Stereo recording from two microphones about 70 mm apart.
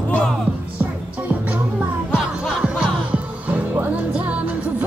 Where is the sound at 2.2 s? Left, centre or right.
Centre.